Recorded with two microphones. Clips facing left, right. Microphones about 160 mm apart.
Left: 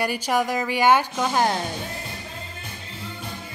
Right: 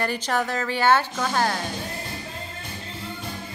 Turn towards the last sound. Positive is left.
turn(degrees=20)  # may be behind; listen again after turning